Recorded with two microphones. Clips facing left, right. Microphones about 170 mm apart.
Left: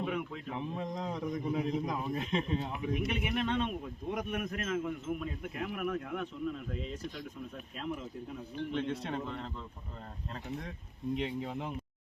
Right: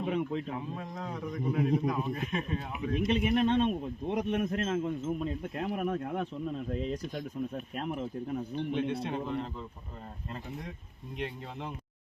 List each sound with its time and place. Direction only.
0.0 s a sound: 25° right (ahead or behind)
0.8 s a man's voice: 20° left (ahead or behind)
3.1 s a man's voice: 20° right (ahead or behind)
6.7 s speech: 45° right (ahead or behind)
8.7 s a man's voice: 15° right (ahead or behind)